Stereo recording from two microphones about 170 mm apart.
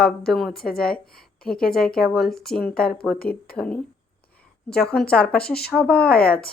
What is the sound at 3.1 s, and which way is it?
Speech, 60° left (ahead or behind).